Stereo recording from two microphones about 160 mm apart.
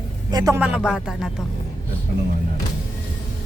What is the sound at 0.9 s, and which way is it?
Speech, 5° right (ahead or behind).